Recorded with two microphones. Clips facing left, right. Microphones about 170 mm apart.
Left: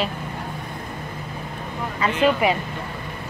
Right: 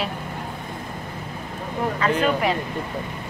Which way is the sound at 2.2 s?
10° left (ahead or behind).